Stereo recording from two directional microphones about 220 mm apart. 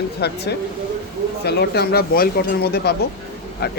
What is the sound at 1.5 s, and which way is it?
Speech, 45° left (ahead or behind).